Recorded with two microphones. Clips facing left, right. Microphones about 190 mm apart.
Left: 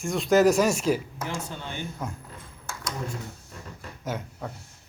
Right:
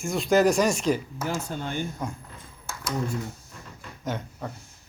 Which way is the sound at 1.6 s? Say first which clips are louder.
Right 5 dB; 45° right (ahead or behind).